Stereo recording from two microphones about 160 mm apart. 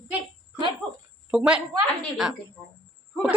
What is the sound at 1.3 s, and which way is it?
Speech, 5° right (ahead or behind).